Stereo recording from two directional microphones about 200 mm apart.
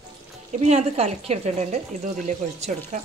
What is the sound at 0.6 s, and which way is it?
Speech, 30° right (ahead or behind).